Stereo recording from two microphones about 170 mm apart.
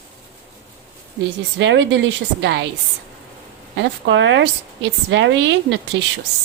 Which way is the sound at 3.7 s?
90° right.